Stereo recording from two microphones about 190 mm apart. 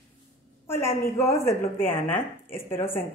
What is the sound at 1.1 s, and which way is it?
Speech, 15° left (ahead or behind).